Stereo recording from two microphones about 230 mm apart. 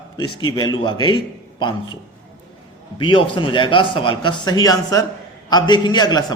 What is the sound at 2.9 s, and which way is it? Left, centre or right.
A man's voice, left.